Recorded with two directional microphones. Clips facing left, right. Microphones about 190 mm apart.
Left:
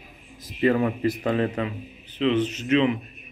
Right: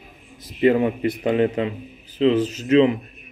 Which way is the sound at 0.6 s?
25° right (ahead or behind).